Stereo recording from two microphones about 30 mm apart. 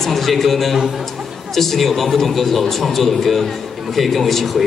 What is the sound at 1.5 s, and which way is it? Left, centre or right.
Speech, centre.